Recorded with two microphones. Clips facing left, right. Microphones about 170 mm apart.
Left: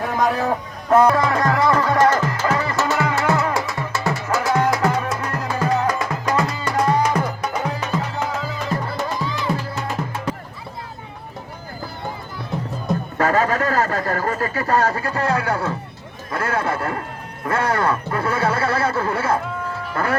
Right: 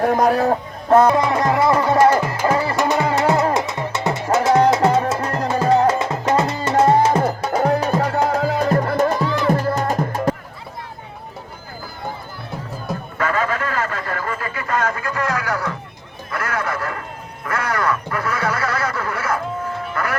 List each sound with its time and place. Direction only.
0.0 s a man's voice: 45° right (ahead or behind)
1.0 s music: 20° right (ahead or behind)
2.0 s music: 10° right (ahead or behind)
2.5 s music: 30° right (ahead or behind)
2.7 s music: 15° right (ahead or behind)
7.6 s music: 45° right (ahead or behind)
13.1 s a sound: 40° left (ahead or behind)
20.0 s speech: 30° left (ahead or behind)